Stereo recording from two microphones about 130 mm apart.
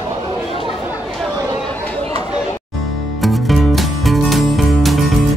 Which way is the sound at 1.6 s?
10° left (ahead or behind).